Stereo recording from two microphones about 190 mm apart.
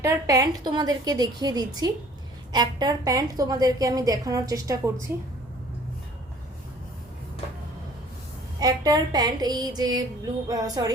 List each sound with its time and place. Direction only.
0.0 s a woman's voice: 20° right (ahead or behind)
8.5 s a woman's voice: 20° right (ahead or behind)